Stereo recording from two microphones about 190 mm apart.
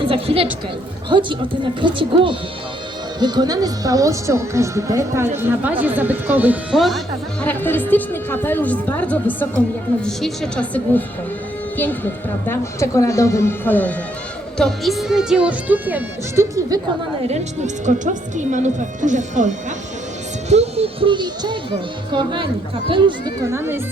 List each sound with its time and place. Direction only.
0.0 s a woman's voice: 30° right (ahead or behind)
1.8 s speech: 25° right (ahead or behind); by 7.0 s centre (ahead or behind)
7.4 s a woman's voice: 10° left (ahead or behind)
12.5 s a woman's voice: 15° left (ahead or behind); by 16.8 s 15° right (ahead or behind)
17.2 s speech: 35° right (ahead or behind)
23.5 s speech: 10° right (ahead or behind)